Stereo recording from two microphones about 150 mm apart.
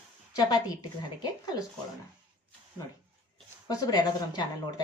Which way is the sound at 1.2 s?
25° left (ahead or behind).